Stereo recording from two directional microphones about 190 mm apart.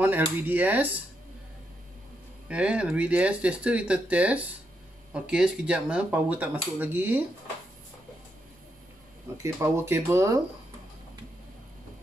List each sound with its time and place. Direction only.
0.0 s speech: 10° right (ahead or behind)
2.4 s speech: 5° right (ahead or behind)
9.4 s speech: 15° right (ahead or behind)